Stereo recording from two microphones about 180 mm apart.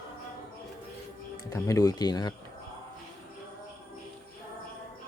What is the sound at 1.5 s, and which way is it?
Speech, 20° left (ahead or behind).